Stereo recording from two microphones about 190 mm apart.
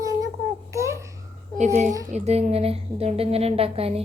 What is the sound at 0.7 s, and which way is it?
Babbling, 15° right (ahead or behind).